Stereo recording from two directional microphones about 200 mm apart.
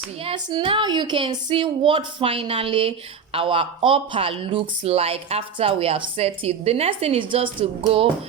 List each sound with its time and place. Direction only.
0.3 s speech: 25° right (ahead or behind)